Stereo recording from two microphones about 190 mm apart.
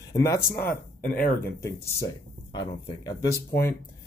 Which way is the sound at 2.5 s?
20° left (ahead or behind).